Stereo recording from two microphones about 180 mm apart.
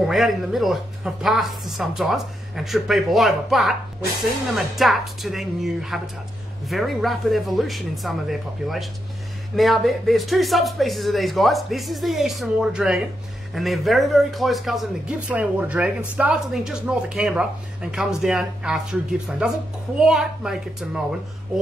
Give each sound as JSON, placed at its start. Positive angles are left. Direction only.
{"t": 0.0, "sound": "a woman's voice", "side_deg": 0}